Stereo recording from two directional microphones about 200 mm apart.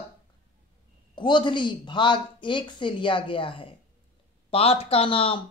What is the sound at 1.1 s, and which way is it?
Speech, 25° left (ahead or behind).